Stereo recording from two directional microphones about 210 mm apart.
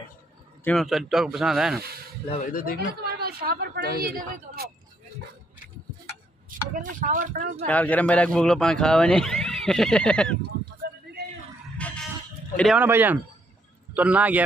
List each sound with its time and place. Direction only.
0.7 s speech: centre (ahead or behind)
2.2 s speech: 30° left (ahead or behind)
2.5 s speech: 45° left (ahead or behind)
2.9 s speech: 50° right (ahead or behind)
6.5 s speech: 40° right (ahead or behind)
7.6 s speech: 5° left (ahead or behind)
10.8 s a sound: 50° right (ahead or behind)
11.8 s music: 5° left (ahead or behind)
12.5 s a man's voice: centre (ahead or behind)